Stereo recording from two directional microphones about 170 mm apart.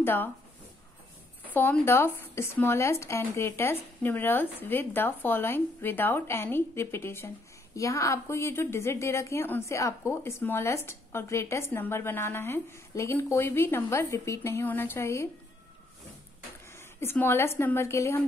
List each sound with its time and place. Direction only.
0.0 s speech: 10° left (ahead or behind)
1.5 s a woman's voice: 10° left (ahead or behind)
16.7 s speech: 15° left (ahead or behind)